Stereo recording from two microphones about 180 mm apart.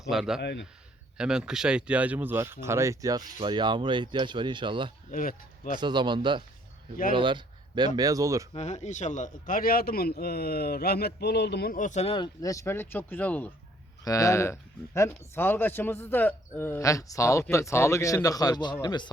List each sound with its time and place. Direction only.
0.1 s a man's voice: centre (ahead or behind)
0.4 s speech: 75° left (ahead or behind)
1.2 s speech: 5° right (ahead or behind); by 4.9 s 25° right (ahead or behind)
5.1 s speech: 50° left (ahead or behind)
5.8 s speech: 25° right (ahead or behind)
8.5 s speech: 40° left (ahead or behind); by 19.1 s 25° left (ahead or behind)